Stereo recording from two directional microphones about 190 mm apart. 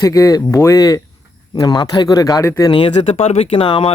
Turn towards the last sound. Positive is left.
turn(degrees=30)  # may be behind; listen again after turning